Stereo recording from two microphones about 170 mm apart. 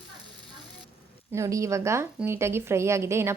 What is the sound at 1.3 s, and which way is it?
A woman's voice, 20° right (ahead or behind).